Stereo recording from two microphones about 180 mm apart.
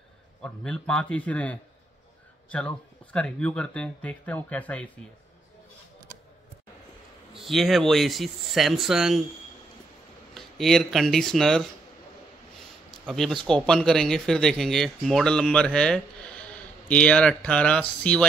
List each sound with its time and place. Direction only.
0.4 s speech: 5° left (ahead or behind)
7.3 s speech: centre (ahead or behind)
10.3 s speech: centre (ahead or behind)
13.0 s speech: centre (ahead or behind)